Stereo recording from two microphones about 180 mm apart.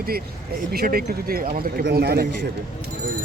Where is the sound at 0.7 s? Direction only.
60° right (ahead or behind).